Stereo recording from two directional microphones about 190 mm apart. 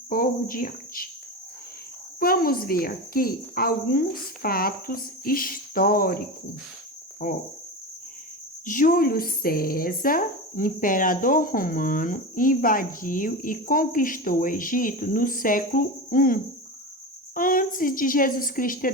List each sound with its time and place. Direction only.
0.1 s speech: 45° left (ahead or behind)
2.1 s speech: 50° left (ahead or behind)
8.6 s speech: 45° left (ahead or behind)